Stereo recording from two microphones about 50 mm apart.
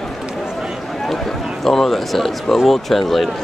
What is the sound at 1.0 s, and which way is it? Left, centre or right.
Speech, centre.